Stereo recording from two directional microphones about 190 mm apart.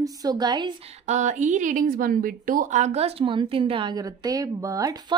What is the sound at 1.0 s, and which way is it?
Speech, 40° right (ahead or behind).